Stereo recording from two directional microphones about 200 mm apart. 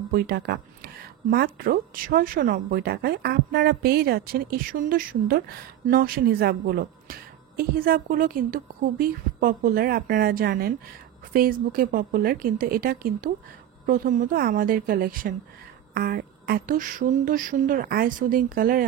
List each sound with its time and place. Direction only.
0.1 s speech: 50° right (ahead or behind)